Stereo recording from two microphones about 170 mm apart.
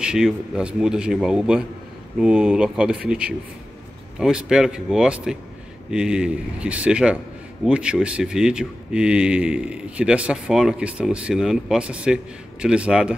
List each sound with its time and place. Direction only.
0.0 s speech: 5° right (ahead or behind)